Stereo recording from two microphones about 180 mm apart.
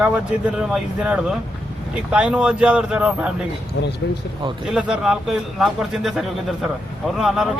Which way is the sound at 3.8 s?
85° left.